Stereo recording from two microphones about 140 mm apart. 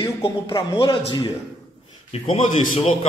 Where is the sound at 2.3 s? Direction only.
70° left (ahead or behind).